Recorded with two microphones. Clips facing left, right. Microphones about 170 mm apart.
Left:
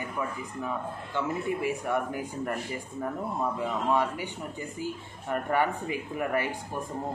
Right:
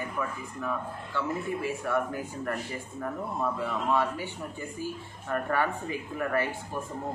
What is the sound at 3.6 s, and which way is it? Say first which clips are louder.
A man's voice: left 1 dB; 15° left (ahead or behind).